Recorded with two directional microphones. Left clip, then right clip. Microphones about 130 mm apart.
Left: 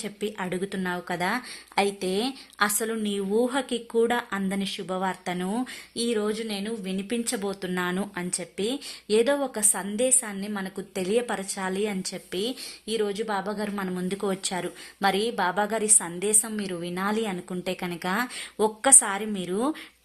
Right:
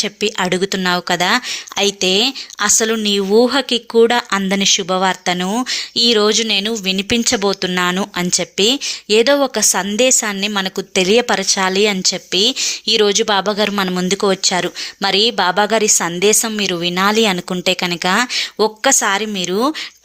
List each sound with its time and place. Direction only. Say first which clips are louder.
0.3 s a woman's voice: right 14 dB; 35° right (ahead or behind)
8.1 s a woman's voice: right 15 dB; 35° right (ahead or behind)
11.3 s speech: right 15 dB; 30° right (ahead or behind)
12.9 s speech: right 13 dB; 40° right (ahead or behind); by 19.7 s 25° right (ahead or behind)